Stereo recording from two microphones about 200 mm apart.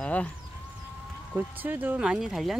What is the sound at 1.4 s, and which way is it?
Speech, 10° right (ahead or behind).